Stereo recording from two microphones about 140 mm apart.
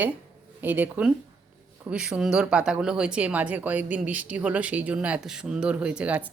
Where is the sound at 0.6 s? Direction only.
10° right (ahead or behind).